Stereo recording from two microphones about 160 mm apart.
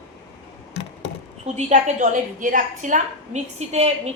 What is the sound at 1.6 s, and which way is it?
A woman's voice, 45° right (ahead or behind).